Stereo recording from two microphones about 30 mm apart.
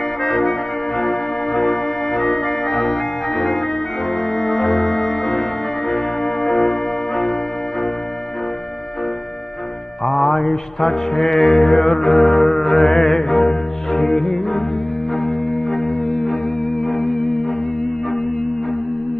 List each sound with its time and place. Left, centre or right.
0.2 s organ: centre
4.3 s music: centre
5.9 s organ: centre
6.7 s music: centre
10.1 s mantra: centre
11.5 s music: centre